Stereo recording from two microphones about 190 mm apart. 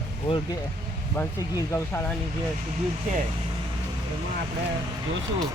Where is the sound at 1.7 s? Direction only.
15° left (ahead or behind).